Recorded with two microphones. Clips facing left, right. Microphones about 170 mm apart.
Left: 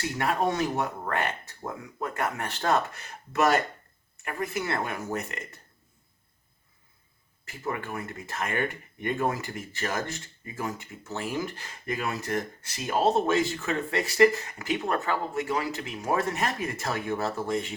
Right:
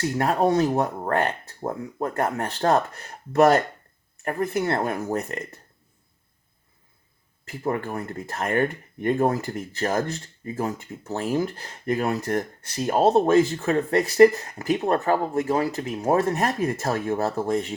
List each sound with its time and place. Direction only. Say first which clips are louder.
0.1 s speech: right 5 dB; 35° right (ahead or behind)
7.6 s speech: right 6 dB; 35° right (ahead or behind)